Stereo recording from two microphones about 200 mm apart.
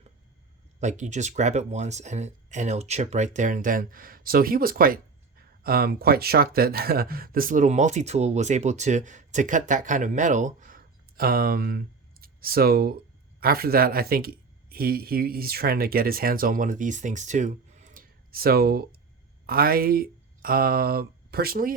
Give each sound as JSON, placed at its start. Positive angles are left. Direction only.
{"t": 0.8, "sound": "speech", "side_deg": -35}